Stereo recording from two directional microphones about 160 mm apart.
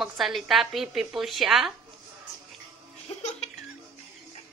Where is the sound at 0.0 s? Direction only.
Centre (ahead or behind).